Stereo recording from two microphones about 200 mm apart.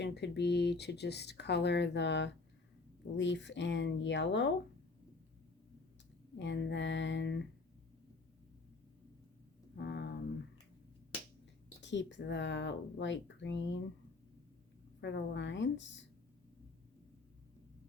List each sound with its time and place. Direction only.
0.0 s speech: 60° left (ahead or behind)
6.4 s speech: 65° left (ahead or behind)
9.7 s a sound: 60° left (ahead or behind)
11.8 s speech: 65° left (ahead or behind)
15.0 s speech: 60° left (ahead or behind)